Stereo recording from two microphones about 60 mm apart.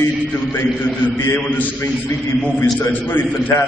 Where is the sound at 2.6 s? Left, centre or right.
Left.